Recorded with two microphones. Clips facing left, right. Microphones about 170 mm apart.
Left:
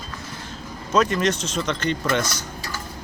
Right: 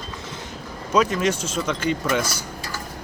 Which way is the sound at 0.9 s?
5° right (ahead or behind).